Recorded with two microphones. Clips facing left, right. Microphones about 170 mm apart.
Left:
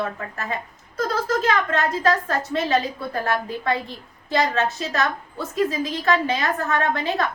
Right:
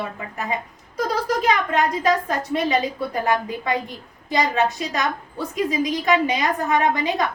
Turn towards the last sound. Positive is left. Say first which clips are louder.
# right 2 dB
turn(degrees=-15)  # may be behind; listen again after turning